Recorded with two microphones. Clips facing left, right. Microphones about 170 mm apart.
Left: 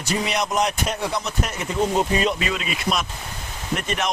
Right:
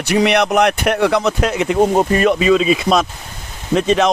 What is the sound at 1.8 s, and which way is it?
Speech, 55° right (ahead or behind).